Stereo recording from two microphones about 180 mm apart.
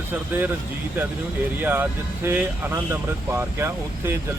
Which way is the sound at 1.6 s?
10° right (ahead or behind).